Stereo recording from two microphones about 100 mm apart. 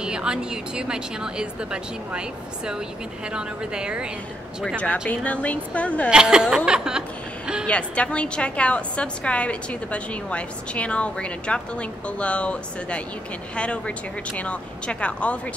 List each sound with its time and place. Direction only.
0.0 s speech: 10° right (ahead or behind)
5.0 s a woman's voice: 15° left (ahead or behind)
6.0 s a sound: 10° right (ahead or behind)
7.6 s a woman's voice: 10° left (ahead or behind)